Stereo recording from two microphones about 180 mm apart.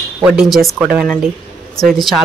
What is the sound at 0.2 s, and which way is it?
Speech, centre (ahead or behind).